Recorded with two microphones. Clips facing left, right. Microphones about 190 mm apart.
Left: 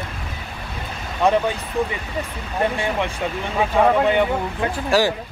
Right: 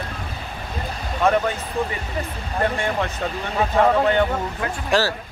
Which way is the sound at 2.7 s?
15° left (ahead or behind).